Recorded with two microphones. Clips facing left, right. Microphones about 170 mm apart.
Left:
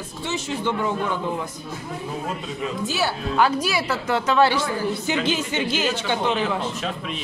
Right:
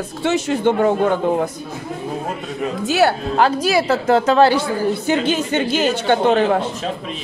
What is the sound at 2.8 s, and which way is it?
Speech, 65° right (ahead or behind).